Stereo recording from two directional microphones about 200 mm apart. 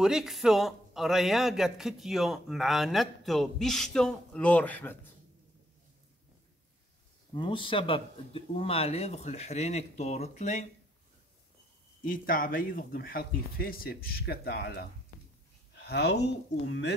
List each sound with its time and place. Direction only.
0.0 s speech: centre (ahead or behind)
7.3 s speech: 25° left (ahead or behind)
12.0 s speech: 45° left (ahead or behind)